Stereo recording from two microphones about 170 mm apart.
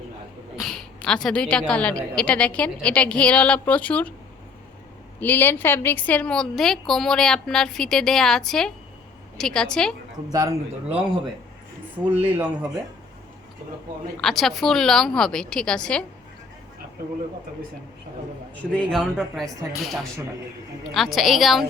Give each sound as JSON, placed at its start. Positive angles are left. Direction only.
{"t": 0.5, "sound": "a woman's voice", "side_deg": 0}
{"t": 5.2, "sound": "a woman's voice", "side_deg": 10}
{"t": 10.2, "sound": "a man's voice", "side_deg": -20}
{"t": 12.1, "sound": "speech", "side_deg": -10}
{"t": 14.2, "sound": "a woman's voice", "side_deg": 0}
{"t": 18.7, "sound": "a woman's voice", "side_deg": 5}